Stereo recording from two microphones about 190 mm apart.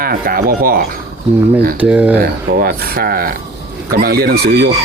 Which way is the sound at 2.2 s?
50° right (ahead or behind).